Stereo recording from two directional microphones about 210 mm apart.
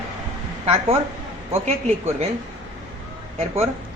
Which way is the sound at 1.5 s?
30° right (ahead or behind).